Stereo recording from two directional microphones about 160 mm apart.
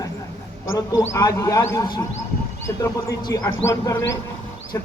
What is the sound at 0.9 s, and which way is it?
Speech, 20° left (ahead or behind).